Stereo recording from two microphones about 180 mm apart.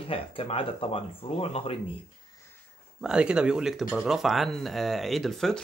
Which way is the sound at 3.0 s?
5° right (ahead or behind).